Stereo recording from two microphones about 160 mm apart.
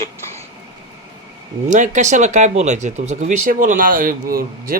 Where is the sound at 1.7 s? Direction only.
50° right (ahead or behind).